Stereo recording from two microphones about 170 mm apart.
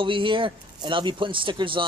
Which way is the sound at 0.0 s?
30° right (ahead or behind).